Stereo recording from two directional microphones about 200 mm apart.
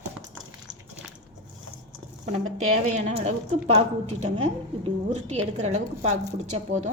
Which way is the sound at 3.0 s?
35° right (ahead or behind).